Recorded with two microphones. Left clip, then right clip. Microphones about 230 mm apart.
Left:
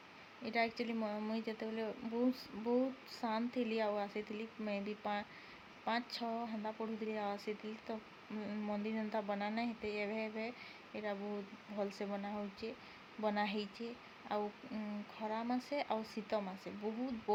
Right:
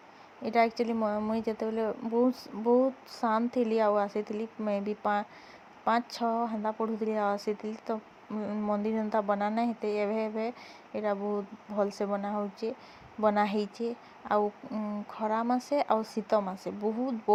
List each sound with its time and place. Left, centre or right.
0.4 s speech: right